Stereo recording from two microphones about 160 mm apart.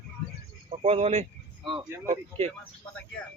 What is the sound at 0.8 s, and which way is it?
Speech, 40° right (ahead or behind).